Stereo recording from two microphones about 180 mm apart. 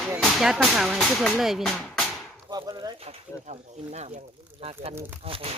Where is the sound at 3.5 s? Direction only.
40° right (ahead or behind).